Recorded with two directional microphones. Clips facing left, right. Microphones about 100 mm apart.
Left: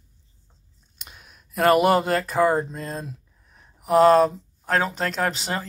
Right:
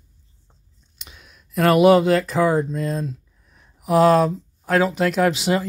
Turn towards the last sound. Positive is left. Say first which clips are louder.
# right 7 dB
turn(degrees=-5)  # may be behind; listen again after turning